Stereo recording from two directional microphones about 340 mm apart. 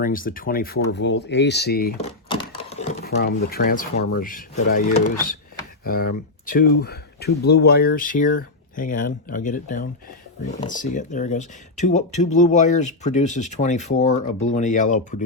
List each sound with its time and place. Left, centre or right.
0.0 s speech: left